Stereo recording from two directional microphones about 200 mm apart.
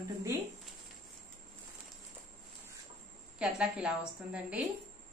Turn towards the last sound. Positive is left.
turn(degrees=-5)  # may be behind; listen again after turning